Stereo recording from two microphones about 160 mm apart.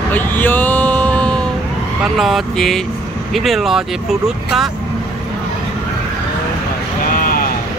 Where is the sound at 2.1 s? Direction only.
Centre (ahead or behind).